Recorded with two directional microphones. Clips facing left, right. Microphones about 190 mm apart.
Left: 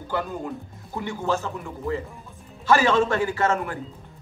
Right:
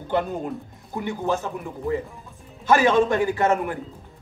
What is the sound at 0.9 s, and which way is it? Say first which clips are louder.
A man's voice: right 1 dB; 15° right (ahead or behind).